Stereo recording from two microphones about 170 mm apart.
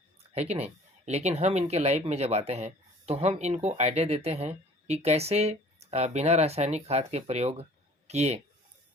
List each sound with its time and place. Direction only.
0.3 s speech: 40° right (ahead or behind)